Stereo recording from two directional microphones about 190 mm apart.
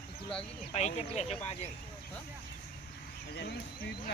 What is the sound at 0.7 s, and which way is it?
Speech, 35° left (ahead or behind).